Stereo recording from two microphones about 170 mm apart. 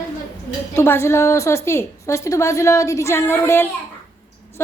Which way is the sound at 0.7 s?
15° left (ahead or behind).